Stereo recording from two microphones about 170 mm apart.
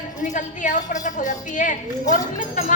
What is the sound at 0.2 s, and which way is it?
A woman's voice, 45° left (ahead or behind).